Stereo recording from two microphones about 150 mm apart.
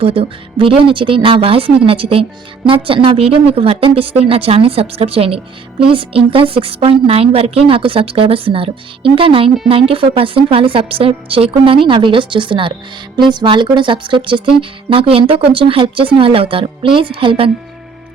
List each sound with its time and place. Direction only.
0.0 s a woman's voice: 40° right (ahead or behind)